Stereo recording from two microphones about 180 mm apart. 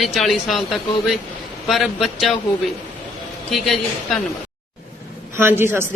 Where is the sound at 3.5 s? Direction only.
5° left (ahead or behind).